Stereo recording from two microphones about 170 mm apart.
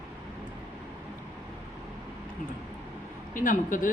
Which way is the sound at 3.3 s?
50° left (ahead or behind).